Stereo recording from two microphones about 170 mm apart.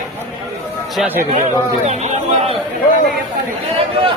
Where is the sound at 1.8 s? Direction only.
40° right (ahead or behind).